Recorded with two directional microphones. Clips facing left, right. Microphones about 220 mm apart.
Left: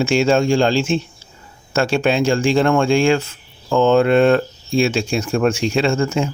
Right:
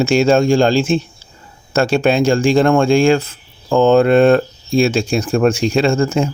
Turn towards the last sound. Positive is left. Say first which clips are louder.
# right 3 dB
turn(degrees=-35)  # may be behind; listen again after turning